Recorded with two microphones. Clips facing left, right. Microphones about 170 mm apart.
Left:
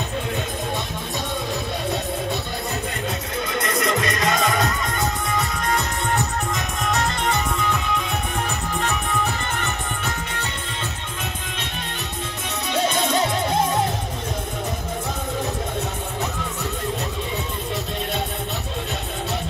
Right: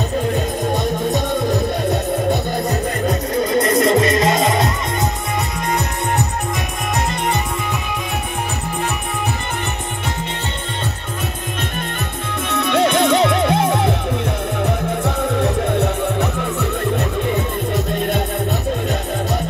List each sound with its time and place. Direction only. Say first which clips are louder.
3.1 s music: right 9 dB; 40° right (ahead or behind); by 4.6 s 25° right (ahead or behind)
6.9 s music: right 2 dB; 10° right (ahead or behind)
12.4 s music: right 7 dB; 65° right (ahead or behind)
15.0 s music: right 8 dB; 65° right (ahead or behind)